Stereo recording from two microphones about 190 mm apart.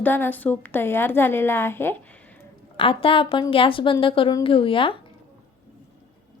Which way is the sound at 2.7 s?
30° left (ahead or behind).